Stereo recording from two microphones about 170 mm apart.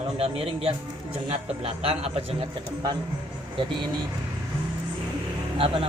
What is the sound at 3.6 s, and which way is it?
Speech, 30° right (ahead or behind).